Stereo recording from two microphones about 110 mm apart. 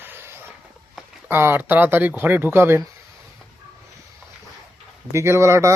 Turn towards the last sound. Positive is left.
turn(degrees=-25)  # may be behind; listen again after turning